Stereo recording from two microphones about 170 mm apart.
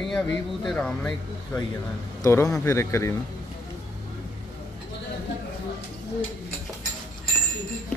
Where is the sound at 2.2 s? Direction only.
20° left (ahead or behind).